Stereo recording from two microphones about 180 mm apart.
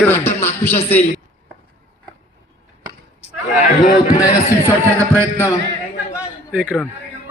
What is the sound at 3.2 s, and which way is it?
Chatter, 40° left (ahead or behind).